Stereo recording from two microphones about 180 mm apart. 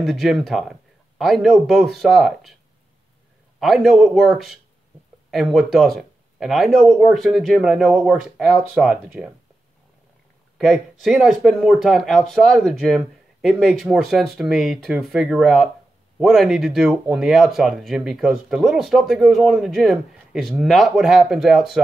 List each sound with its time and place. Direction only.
0.0 s speech: centre (ahead or behind)
3.5 s speech: centre (ahead or behind)
10.6 s speech: centre (ahead or behind)